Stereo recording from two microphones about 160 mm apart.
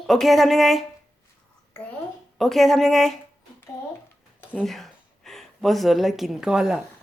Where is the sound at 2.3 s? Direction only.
Centre (ahead or behind).